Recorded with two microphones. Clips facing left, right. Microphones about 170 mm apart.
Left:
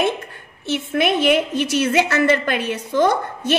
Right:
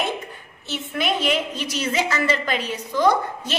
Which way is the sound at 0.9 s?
60° left (ahead or behind).